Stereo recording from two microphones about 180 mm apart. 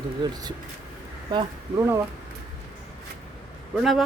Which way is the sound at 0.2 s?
25° right (ahead or behind).